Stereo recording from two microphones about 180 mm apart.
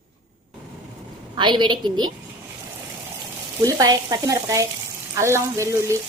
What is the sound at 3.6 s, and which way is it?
Frying, 20° right (ahead or behind).